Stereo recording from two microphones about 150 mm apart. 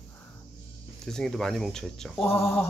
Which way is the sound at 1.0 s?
5° left (ahead or behind).